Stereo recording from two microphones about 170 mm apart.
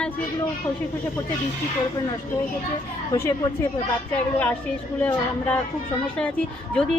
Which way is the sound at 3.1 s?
20° left (ahead or behind).